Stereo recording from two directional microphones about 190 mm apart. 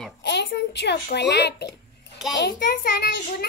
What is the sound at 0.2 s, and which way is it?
A child's voice, 65° left (ahead or behind).